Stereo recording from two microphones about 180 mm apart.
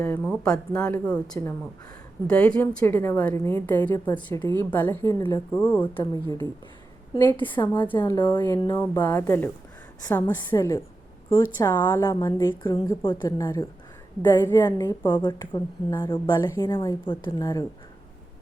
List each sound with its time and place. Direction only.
0.0 s a woman's voice: 10° left (ahead or behind)
7.5 s a woman's voice: 25° left (ahead or behind)
12.2 s a woman's voice: 25° left (ahead or behind)